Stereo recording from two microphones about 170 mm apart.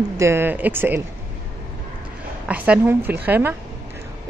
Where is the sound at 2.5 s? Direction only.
10° right (ahead or behind).